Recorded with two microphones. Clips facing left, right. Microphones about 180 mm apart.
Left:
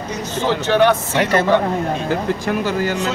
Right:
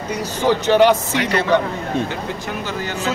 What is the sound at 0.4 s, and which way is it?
Speech, 15° right (ahead or behind).